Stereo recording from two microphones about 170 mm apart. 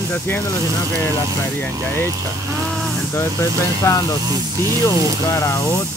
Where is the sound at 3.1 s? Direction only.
15° left (ahead or behind).